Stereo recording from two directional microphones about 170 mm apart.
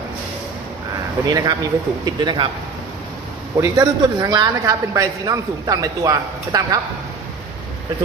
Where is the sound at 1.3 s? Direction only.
20° right (ahead or behind).